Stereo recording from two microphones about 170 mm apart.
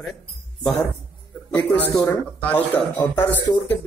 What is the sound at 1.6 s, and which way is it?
Speech, 5° left (ahead or behind).